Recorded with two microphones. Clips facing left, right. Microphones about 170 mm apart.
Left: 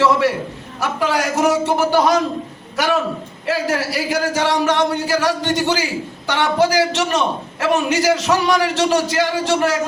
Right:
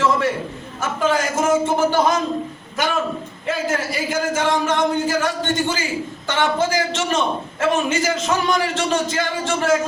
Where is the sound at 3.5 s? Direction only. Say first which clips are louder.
Left 2 dB; 75° left (ahead or behind).